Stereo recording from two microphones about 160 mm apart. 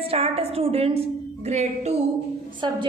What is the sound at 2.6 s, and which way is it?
Speech, 30° right (ahead or behind).